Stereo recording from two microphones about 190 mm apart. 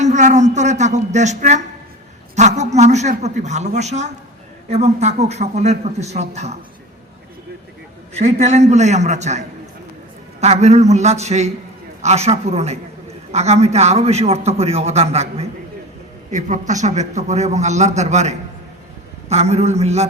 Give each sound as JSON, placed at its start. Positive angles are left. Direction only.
{"t": 0.0, "sound": "a man's voice", "side_deg": -40}
{"t": 8.1, "sound": "a man's voice", "side_deg": -35}
{"t": 10.4, "sound": "a man's voice", "side_deg": -35}